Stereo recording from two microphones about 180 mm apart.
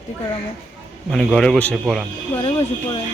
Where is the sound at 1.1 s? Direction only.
Centre (ahead or behind).